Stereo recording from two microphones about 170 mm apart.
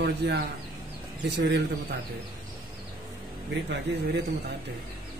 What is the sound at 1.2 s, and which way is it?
Speech, 90° right.